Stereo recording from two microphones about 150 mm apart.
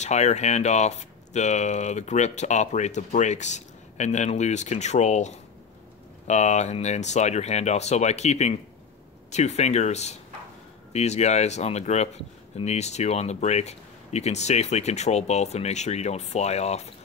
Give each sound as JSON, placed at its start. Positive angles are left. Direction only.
{"t": 0.0, "sound": "speech", "side_deg": 50}